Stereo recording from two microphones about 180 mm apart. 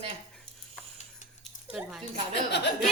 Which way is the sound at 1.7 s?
Centre (ahead or behind).